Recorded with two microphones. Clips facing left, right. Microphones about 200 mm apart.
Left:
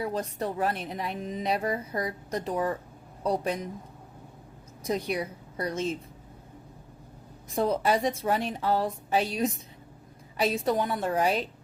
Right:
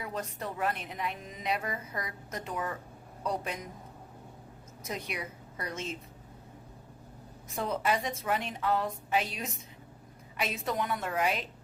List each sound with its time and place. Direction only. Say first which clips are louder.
0.0 s a woman's voice: left 7 dB; 35° left (ahead or behind)
4.8 s a woman's voice: left 9 dB; 35° left (ahead or behind)
7.5 s a woman's voice: left 6 dB; 35° left (ahead or behind)